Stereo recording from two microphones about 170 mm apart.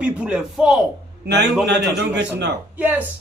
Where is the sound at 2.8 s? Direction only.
10° right (ahead or behind).